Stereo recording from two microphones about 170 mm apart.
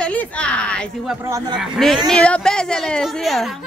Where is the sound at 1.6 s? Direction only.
Centre (ahead or behind).